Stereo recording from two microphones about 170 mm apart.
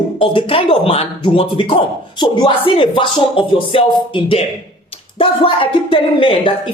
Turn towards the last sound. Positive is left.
turn(degrees=30)  # may be behind; listen again after turning